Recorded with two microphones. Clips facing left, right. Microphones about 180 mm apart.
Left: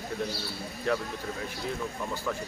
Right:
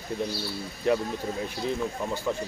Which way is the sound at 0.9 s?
20° right (ahead or behind).